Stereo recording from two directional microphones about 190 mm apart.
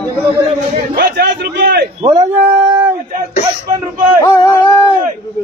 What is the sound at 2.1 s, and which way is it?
Speech, 15° right (ahead or behind).